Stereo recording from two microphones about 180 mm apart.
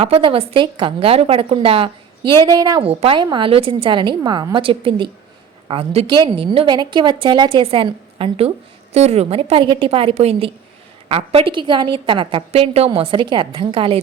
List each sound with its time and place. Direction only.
0.0 s a woman's voice: 30° right (ahead or behind)